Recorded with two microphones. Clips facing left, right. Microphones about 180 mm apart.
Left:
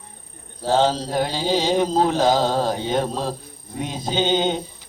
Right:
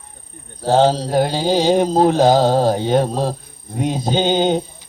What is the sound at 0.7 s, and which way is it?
Mantra, 40° right (ahead or behind).